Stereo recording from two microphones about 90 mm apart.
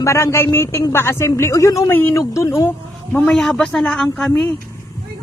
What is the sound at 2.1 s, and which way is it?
Speech, 35° left (ahead or behind).